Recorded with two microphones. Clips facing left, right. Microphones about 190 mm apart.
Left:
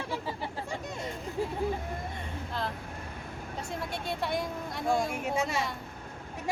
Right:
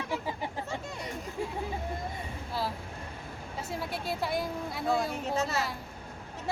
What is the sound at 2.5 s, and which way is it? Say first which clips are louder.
Vehicle: right 2 dB; 5° right (ahead or behind).